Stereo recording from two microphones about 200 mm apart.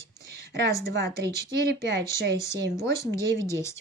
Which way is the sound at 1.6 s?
55° right (ahead or behind).